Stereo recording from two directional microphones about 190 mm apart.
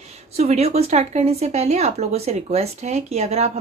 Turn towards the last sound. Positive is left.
turn(degrees=-35)  # may be behind; listen again after turning